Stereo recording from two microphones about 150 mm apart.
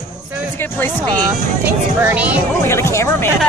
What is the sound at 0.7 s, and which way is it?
Speech, 10° left (ahead or behind).